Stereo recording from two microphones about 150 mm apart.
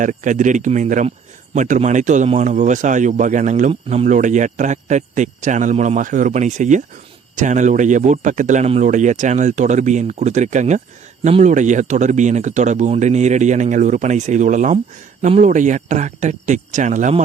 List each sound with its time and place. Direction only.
0.0 s speech: 60° right (ahead or behind)